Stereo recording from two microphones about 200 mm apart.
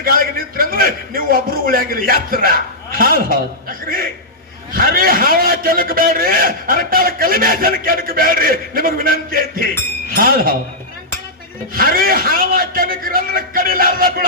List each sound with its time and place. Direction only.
0.0 s a man's voice: 45° right (ahead or behind)
11.7 s a man's voice: 45° right (ahead or behind)